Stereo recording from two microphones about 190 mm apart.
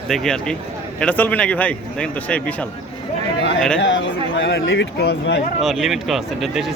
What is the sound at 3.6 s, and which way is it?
Speech, 5° left (ahead or behind).